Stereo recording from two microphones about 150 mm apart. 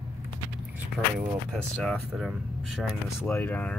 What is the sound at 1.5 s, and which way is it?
Speech, centre (ahead or behind).